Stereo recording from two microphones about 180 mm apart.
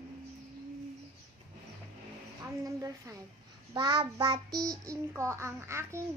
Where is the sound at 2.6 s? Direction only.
20° right (ahead or behind).